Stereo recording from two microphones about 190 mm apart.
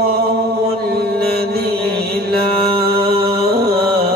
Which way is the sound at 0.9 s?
55° right (ahead or behind).